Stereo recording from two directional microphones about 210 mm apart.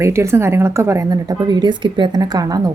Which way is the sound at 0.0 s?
15° right (ahead or behind).